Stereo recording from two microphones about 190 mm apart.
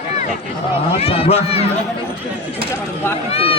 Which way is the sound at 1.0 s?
30° left (ahead or behind).